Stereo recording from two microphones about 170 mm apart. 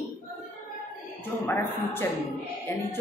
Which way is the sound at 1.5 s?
15° left (ahead or behind).